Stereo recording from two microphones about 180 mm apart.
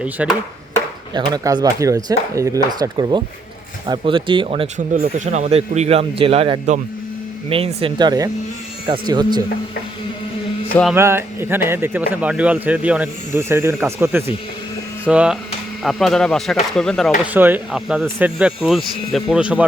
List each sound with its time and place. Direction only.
0.0 s speech: 5° right (ahead or behind)
1.1 s speech: 25° right (ahead or behind)
10.9 s speech: 15° right (ahead or behind); by 17.1 s centre (ahead or behind)
17.3 s speech: 10° right (ahead or behind)